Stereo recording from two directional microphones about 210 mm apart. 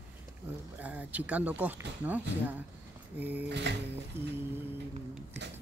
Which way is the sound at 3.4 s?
55° right (ahead or behind).